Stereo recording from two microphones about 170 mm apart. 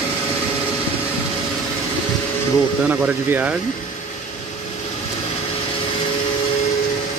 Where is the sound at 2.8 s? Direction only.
10° right (ahead or behind).